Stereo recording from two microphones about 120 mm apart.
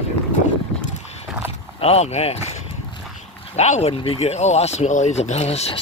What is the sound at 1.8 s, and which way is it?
Speech, 60° left (ahead or behind).